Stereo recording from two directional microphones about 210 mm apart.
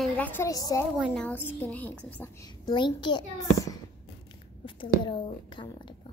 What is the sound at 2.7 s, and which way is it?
A woman's voice, 20° left (ahead or behind).